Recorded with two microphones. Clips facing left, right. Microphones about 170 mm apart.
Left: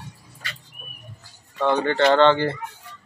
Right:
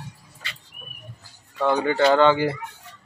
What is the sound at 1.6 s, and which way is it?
Speech, 10° right (ahead or behind).